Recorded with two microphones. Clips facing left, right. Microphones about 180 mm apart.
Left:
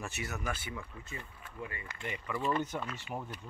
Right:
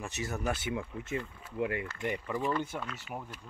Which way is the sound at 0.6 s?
80° right.